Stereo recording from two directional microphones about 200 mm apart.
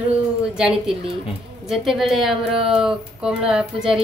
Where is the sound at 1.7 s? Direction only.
Centre (ahead or behind).